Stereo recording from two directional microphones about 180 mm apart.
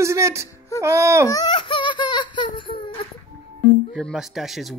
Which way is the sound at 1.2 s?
20° left (ahead or behind).